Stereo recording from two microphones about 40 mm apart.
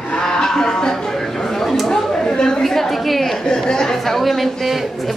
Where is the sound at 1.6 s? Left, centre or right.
Centre.